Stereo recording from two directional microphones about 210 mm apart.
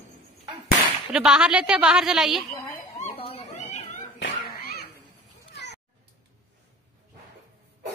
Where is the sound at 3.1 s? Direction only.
30° left (ahead or behind).